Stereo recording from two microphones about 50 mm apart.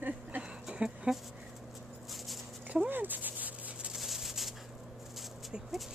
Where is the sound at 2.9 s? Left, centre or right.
Right.